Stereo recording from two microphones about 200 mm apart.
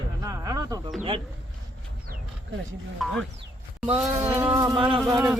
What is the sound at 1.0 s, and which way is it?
Speech, 25° right (ahead or behind).